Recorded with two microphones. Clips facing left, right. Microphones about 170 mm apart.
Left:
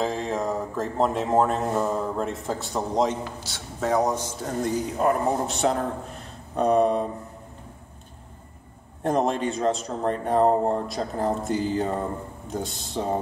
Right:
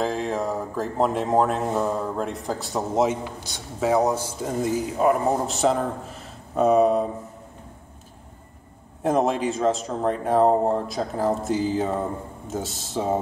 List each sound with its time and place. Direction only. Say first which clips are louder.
0.0 s speech: right 1 dB; centre (ahead or behind)
9.0 s speech: right 2 dB; centre (ahead or behind)